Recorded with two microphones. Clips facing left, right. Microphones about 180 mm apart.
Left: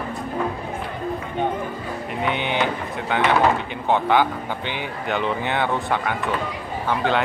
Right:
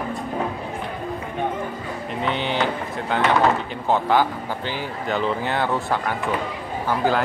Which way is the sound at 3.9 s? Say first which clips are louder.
Even; 5° right (ahead or behind).